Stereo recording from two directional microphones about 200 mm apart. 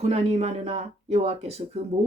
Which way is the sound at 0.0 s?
35° right (ahead or behind).